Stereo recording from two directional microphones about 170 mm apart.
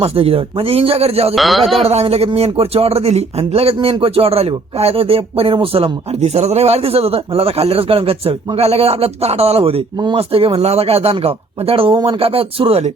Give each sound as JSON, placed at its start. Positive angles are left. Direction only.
{"t": 0.0, "sound": "speech", "side_deg": -35}
{"t": 1.4, "sound": "speech", "side_deg": 0}
{"t": 1.8, "sound": "speech", "side_deg": -40}